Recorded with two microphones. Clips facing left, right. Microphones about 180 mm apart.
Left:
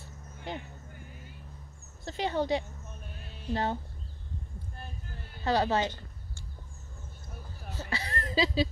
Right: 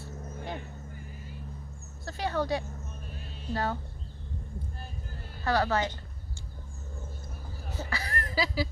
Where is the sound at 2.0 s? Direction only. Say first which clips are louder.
Left 1 dB; 20° left (ahead or behind).